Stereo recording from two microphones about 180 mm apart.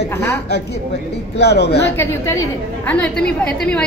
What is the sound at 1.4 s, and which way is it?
Speech, 70° left (ahead or behind).